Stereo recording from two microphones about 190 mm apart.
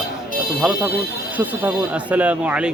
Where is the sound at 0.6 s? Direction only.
5° right (ahead or behind).